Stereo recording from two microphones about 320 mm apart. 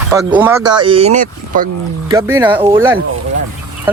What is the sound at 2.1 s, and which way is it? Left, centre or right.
Speech, centre.